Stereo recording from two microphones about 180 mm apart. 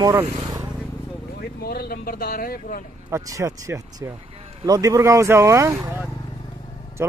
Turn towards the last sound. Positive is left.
turn(degrees=-15)  # may be behind; listen again after turning